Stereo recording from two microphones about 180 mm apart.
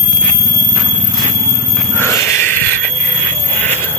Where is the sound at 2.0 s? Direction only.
15° left (ahead or behind).